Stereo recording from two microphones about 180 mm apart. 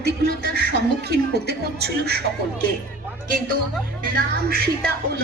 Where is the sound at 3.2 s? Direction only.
50° right (ahead or behind).